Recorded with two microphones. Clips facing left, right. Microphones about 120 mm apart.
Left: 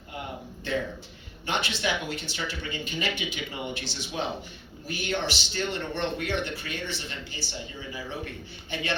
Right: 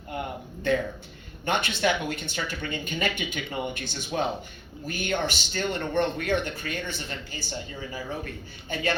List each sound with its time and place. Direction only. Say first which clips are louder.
0.7 s speech: right 5 dB; 50° right (ahead or behind)
8.7 s speech: right 3 dB; 45° right (ahead or behind)